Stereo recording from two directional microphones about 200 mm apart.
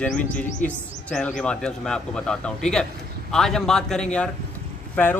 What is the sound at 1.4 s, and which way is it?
A man's voice, 5° left (ahead or behind).